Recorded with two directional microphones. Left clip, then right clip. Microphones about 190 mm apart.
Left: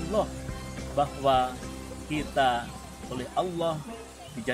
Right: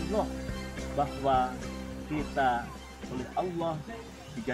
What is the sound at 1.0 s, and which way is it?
Speech, 20° left (ahead or behind).